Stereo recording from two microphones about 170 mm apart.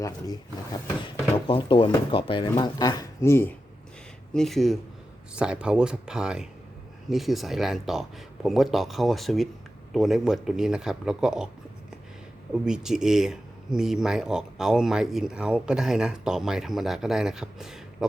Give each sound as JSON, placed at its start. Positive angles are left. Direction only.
{"t": 0.0, "sound": "speech", "side_deg": 20}
{"t": 4.4, "sound": "speech", "side_deg": 0}
{"t": 12.6, "sound": "speech", "side_deg": -5}